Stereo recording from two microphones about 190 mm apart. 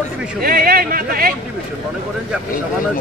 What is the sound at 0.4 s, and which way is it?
Speech, 50° right (ahead or behind).